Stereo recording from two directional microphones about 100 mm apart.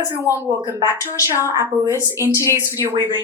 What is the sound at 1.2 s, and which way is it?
A woman's voice, 25° right (ahead or behind).